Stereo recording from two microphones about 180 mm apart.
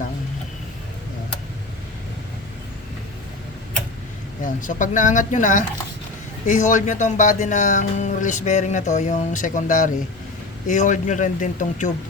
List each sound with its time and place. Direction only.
4.4 s speech: 45° left (ahead or behind)